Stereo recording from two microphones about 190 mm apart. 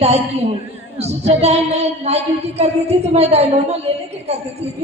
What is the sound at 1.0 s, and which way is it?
A man's voice, 35° right (ahead or behind).